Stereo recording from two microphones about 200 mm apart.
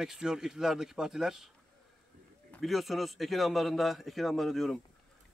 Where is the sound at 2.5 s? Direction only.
Centre (ahead or behind).